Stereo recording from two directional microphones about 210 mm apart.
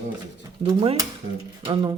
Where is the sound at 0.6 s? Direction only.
25° right (ahead or behind).